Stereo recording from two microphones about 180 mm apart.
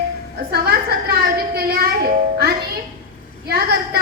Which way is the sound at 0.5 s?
60° right (ahead or behind).